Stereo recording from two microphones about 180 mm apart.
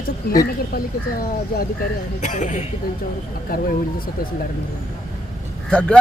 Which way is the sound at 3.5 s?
55° left (ahead or behind).